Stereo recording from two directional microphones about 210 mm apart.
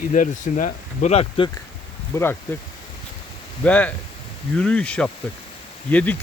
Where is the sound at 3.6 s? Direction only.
5° left (ahead or behind).